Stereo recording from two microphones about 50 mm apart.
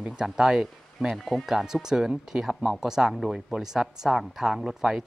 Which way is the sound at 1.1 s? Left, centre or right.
Centre.